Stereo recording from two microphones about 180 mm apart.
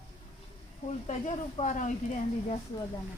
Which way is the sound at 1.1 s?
40° left (ahead or behind).